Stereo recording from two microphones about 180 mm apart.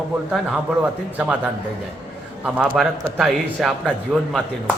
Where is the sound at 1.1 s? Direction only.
10° right (ahead or behind).